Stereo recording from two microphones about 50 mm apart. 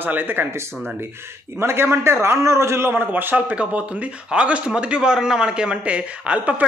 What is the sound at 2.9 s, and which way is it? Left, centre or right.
Speech, right.